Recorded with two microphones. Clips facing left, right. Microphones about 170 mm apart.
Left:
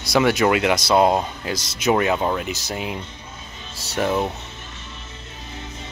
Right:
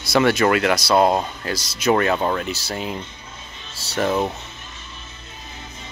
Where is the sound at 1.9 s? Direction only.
10° left (ahead or behind).